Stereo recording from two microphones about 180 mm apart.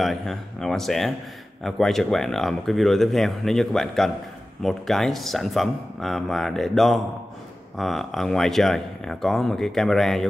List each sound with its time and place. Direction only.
0.0 s speech: centre (ahead or behind)